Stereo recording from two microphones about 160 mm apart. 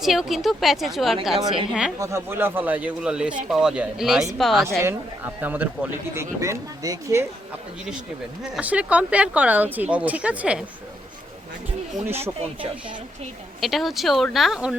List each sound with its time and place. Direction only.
0.0 s a woman's voice: centre (ahead or behind)
2.0 s a woman's voice: 15° right (ahead or behind); by 4.8 s centre (ahead or behind)
4.8 s speech: 15° right (ahead or behind)
8.5 s speech: 5° right (ahead or behind)
12.0 s speech: 15° right (ahead or behind)
13.6 s a woman's voice: centre (ahead or behind)